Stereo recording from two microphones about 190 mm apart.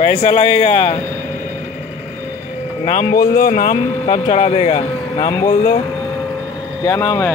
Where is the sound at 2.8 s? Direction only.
45° left (ahead or behind).